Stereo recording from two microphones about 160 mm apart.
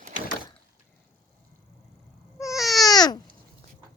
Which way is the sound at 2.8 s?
25° left (ahead or behind).